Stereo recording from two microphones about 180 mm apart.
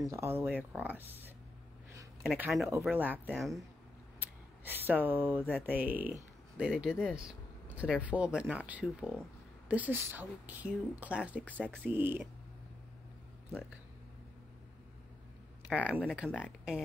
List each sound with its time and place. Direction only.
0.0 s speech: 15° right (ahead or behind)
2.2 s speech: 5° right (ahead or behind)
4.2 s speech: 10° right (ahead or behind)
15.7 s speech: 5° right (ahead or behind)